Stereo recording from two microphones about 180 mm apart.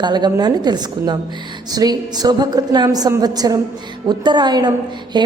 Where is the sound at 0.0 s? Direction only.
25° right (ahead or behind).